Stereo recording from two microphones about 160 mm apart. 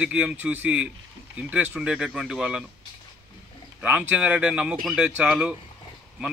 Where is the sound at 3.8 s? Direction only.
10° right (ahead or behind).